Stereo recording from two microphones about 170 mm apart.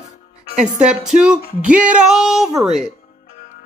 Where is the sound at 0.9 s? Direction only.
5° right (ahead or behind).